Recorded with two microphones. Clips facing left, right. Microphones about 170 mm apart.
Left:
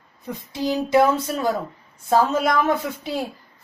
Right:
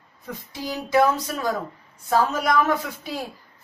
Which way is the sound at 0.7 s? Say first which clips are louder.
Left 3 dB; 25° left (ahead or behind).